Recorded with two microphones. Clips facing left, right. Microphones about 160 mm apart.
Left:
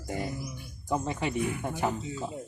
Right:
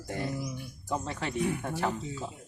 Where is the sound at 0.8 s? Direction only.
10° left (ahead or behind).